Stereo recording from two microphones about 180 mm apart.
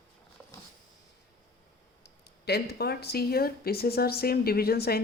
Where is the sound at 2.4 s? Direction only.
65° left (ahead or behind).